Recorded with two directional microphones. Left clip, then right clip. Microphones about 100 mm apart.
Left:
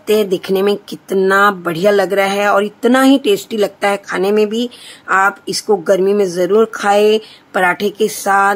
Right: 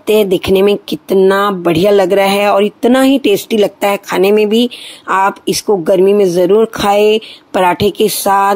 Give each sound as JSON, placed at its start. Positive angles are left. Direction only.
{"t": 0.0, "sound": "speech", "side_deg": -30}